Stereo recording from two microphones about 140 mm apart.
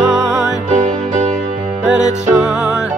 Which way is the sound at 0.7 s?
65° right (ahead or behind).